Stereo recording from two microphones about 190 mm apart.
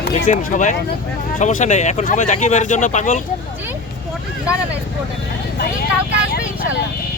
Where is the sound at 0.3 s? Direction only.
40° left (ahead or behind).